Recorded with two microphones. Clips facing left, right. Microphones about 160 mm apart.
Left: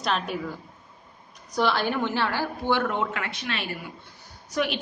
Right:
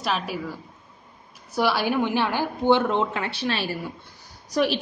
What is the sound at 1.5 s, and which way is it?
A woman's voice, 10° right (ahead or behind).